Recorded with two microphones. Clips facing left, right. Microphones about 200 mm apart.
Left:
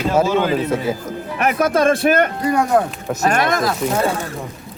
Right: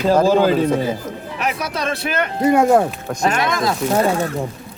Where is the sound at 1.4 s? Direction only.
55° left (ahead or behind).